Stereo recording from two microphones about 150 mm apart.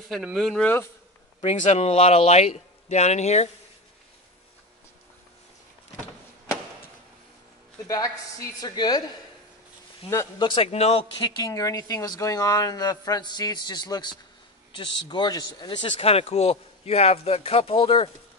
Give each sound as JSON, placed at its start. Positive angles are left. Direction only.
{"t": 0.1, "sound": "speech", "side_deg": 0}
{"t": 1.4, "sound": "a man's voice", "side_deg": 45}
{"t": 7.9, "sound": "speech", "side_deg": 25}
{"t": 10.4, "sound": "speech", "side_deg": 35}
{"t": 11.2, "sound": "speech", "side_deg": 25}